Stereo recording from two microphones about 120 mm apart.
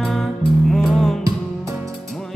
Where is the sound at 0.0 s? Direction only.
Centre (ahead or behind).